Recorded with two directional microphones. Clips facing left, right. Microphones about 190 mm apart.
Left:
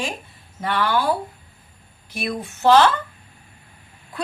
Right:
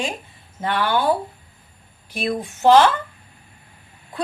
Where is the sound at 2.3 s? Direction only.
15° right (ahead or behind).